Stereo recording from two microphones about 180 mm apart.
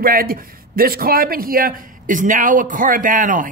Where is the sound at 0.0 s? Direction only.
55° right (ahead or behind).